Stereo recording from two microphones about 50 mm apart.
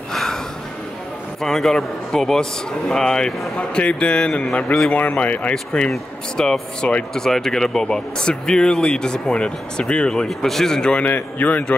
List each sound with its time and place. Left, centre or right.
0.1 s a sound: centre
1.4 s speech: centre; by 5.5 s left
5.5 s speech: centre
7.2 s speech: centre
11.0 s a man's voice: left